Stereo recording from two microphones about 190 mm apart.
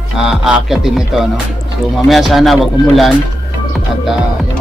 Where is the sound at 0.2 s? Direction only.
5° right (ahead or behind).